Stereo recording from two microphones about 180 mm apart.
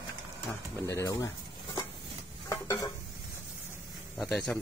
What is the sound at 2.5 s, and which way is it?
Stir, 20° left (ahead or behind).